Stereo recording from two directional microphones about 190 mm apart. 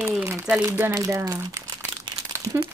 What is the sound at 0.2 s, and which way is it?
Speech, 15° right (ahead or behind).